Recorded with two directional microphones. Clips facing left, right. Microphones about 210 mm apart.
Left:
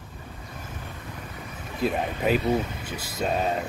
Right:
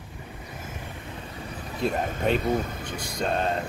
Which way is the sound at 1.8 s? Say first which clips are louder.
Left 1 dB; 5° left (ahead or behind).